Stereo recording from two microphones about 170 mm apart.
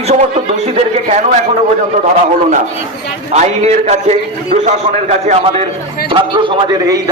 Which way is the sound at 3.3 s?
40° right (ahead or behind).